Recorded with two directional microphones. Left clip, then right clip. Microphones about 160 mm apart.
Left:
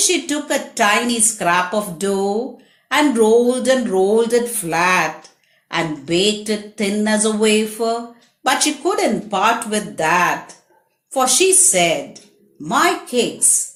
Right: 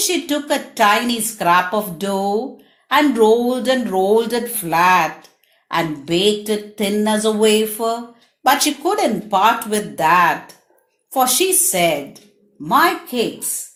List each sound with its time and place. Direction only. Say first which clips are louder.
0.0 s a woman's voice: left 1 dB; 25° right (ahead or behind)